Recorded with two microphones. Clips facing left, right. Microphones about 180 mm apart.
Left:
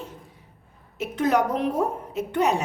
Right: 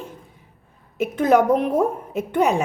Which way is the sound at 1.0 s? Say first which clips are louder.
Right 5 dB; 55° right (ahead or behind).